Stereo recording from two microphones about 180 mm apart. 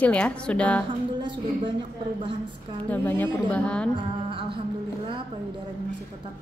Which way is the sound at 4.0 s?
30° right (ahead or behind).